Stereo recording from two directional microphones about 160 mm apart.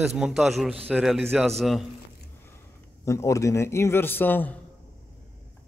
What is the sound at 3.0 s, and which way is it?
A man's voice, 20° left (ahead or behind).